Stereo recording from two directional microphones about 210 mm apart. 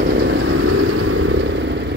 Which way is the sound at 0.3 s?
90° right.